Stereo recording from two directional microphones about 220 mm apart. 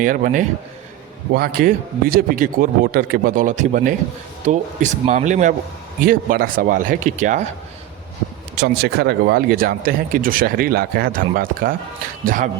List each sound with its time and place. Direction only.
0.0 s a man's voice: 40° right (ahead or behind)
8.5 s a man's voice: 50° right (ahead or behind)